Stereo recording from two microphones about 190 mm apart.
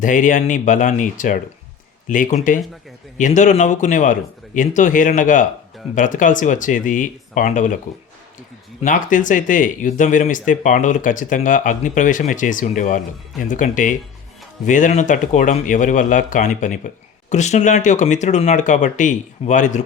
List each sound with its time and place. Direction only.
0.0 s speech: 40° left (ahead or behind)
8.8 s speech: 45° left (ahead or behind)